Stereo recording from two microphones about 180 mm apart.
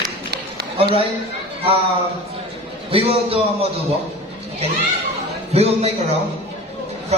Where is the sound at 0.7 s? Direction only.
35° right (ahead or behind).